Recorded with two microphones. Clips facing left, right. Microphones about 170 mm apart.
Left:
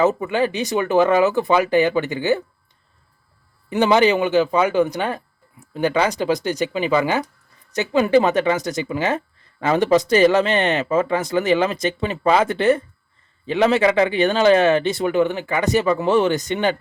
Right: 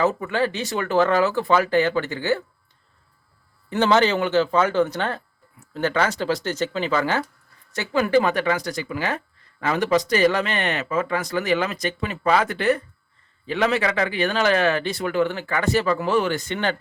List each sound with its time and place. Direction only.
0.0 s speech: 20° left (ahead or behind)
3.7 s speech: 15° left (ahead or behind)